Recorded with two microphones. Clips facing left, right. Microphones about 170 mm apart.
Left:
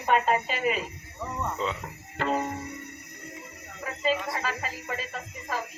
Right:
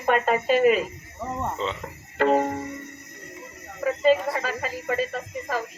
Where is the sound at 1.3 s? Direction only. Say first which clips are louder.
Right 3 dB; 45° right (ahead or behind).